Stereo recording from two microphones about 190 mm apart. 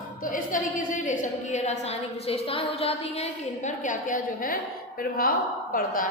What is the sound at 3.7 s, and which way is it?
Speech, 40° left (ahead or behind).